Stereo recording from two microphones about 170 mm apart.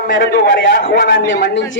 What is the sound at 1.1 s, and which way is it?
Speech, 90° left.